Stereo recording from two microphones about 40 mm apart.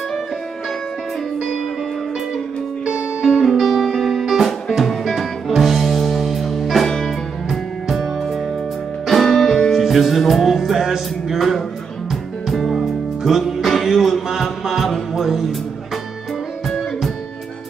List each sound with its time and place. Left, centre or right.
3.2 s music: centre
3.4 s music: centre